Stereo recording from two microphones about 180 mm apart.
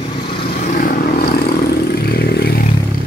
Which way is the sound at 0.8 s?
55° left (ahead or behind).